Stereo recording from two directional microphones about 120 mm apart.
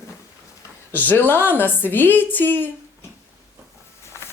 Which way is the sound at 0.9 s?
15° left (ahead or behind).